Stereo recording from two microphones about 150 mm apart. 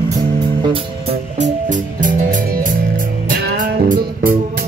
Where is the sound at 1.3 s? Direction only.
55° right (ahead or behind).